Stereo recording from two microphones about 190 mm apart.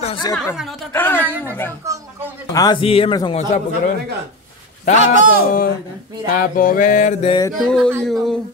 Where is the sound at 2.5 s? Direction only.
25° left (ahead or behind).